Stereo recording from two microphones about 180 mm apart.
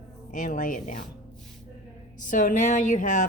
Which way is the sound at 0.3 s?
45° left (ahead or behind).